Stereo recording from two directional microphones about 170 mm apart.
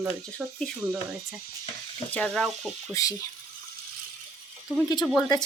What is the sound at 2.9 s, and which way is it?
Speech, 20° left (ahead or behind).